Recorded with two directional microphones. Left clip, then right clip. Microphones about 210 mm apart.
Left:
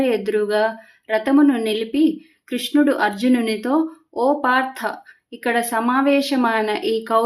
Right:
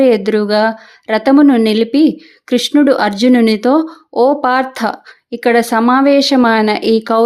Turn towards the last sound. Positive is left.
turn(degrees=-40)  # may be behind; listen again after turning